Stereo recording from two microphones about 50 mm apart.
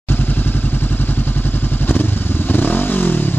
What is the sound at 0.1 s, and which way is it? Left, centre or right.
Vehicle, left.